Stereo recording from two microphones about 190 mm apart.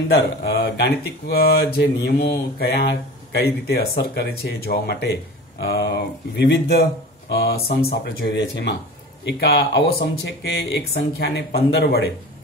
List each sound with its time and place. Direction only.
0.1 s speech: 55° left (ahead or behind)